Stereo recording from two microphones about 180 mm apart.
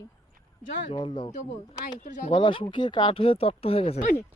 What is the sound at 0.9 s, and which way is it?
Speech, 25° left (ahead or behind).